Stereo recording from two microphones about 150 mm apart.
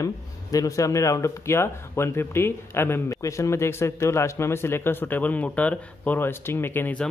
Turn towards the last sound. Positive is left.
turn(degrees=10)  # may be behind; listen again after turning